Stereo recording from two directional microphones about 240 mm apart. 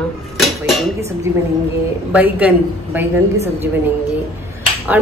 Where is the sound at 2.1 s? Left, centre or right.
Centre.